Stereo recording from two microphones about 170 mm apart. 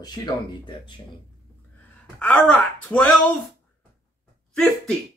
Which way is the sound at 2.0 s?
5° left (ahead or behind).